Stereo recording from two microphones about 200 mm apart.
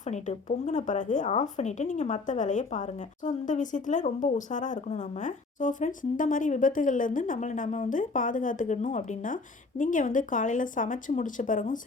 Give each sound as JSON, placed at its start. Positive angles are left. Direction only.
{"t": 0.1, "sound": "a woman's voice", "side_deg": 35}